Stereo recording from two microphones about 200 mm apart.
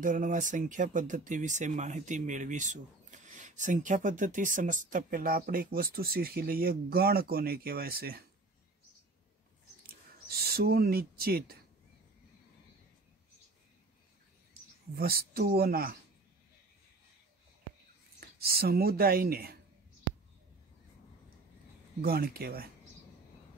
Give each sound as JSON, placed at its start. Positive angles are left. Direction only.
{"t": 0.0, "sound": "speech", "side_deg": -40}
{"t": 9.8, "sound": "speech", "side_deg": -50}
{"t": 15.0, "sound": "speech", "side_deg": -50}
{"t": 18.2, "sound": "speech", "side_deg": -50}
{"t": 22.0, "sound": "speech", "side_deg": -50}